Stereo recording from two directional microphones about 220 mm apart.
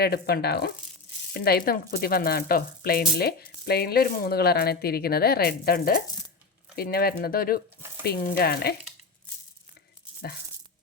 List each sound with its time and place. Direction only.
0.0 s speech: 45° left (ahead or behind)